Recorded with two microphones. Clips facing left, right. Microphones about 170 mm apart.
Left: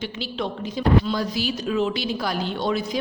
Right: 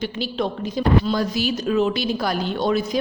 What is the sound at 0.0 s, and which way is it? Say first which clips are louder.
Speech: right 4 dB; 40° right (ahead or behind).